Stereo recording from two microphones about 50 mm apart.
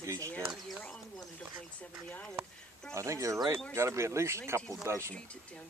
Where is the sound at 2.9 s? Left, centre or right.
Right.